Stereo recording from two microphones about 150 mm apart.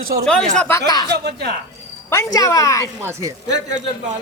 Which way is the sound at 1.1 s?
90° right.